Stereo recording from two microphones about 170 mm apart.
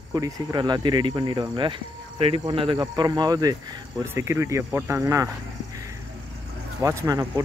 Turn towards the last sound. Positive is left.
turn(degrees=-20)  # may be behind; listen again after turning